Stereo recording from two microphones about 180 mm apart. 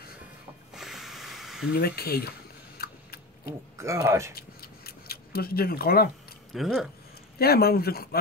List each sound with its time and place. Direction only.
0.7 s a sound: centre (ahead or behind)
1.7 s speech: 60° left (ahead or behind)
2.8 s vehicle: 60° left (ahead or behind)
3.7 s speech: 15° right (ahead or behind)
4.4 s a sound: 60° left (ahead or behind)
6.5 s speech: centre (ahead or behind)
7.3 s speech: 60° left (ahead or behind)